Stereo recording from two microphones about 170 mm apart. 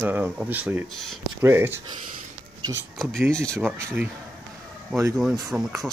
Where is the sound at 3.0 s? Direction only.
5° left (ahead or behind).